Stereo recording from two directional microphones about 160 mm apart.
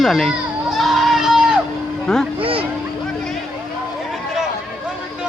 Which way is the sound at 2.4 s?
35° right (ahead or behind).